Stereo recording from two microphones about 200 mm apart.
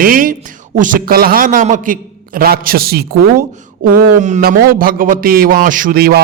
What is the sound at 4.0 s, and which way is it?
A man's voice, 35° right (ahead or behind).